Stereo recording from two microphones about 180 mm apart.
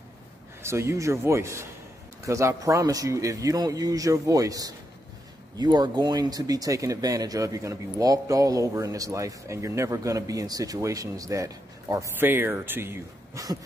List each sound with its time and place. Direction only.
0.6 s a man's voice: 15° right (ahead or behind)